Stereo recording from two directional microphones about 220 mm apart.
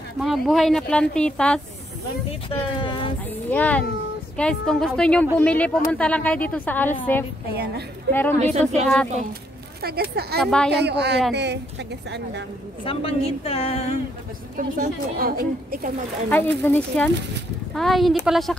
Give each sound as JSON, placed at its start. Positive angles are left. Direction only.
{"t": 0.2, "sound": "speech", "side_deg": 0}
{"t": 2.8, "sound": "speech", "side_deg": 20}
{"t": 3.4, "sound": "a woman's voice", "side_deg": 5}
{"t": 7.5, "sound": "a woman's voice", "side_deg": -45}
{"t": 8.1, "sound": "a woman's voice", "side_deg": 10}
{"t": 9.8, "sound": "a woman's voice", "side_deg": -45}
{"t": 10.4, "sound": "speech", "side_deg": 5}
{"t": 10.7, "sound": "a woman's voice", "side_deg": -50}
{"t": 12.8, "sound": "speech", "side_deg": 25}
{"t": 14.8, "sound": "a woman's voice", "side_deg": -40}
{"t": 16.3, "sound": "a woman's voice", "side_deg": 10}